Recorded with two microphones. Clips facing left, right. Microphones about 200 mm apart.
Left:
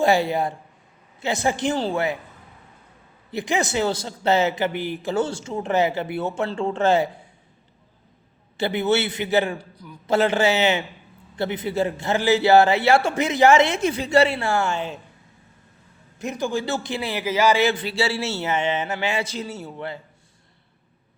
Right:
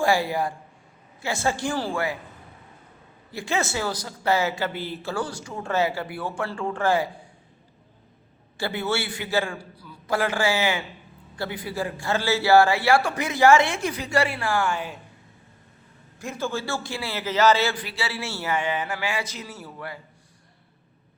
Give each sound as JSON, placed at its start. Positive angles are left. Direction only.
{"t": 0.0, "sound": "speech", "side_deg": 20}
{"t": 3.3, "sound": "speech", "side_deg": 15}
{"t": 8.5, "sound": "speech", "side_deg": 20}
{"t": 16.1, "sound": "speech", "side_deg": 20}